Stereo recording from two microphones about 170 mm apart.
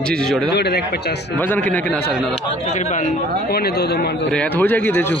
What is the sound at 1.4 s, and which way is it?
Speech, 10° left (ahead or behind).